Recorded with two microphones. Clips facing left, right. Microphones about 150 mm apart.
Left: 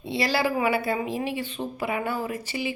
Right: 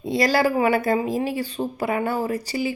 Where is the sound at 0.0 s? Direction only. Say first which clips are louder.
Right 5 dB; 45° right (ahead or behind).